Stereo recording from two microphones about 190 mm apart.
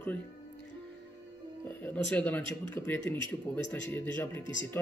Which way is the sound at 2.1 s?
10° left (ahead or behind).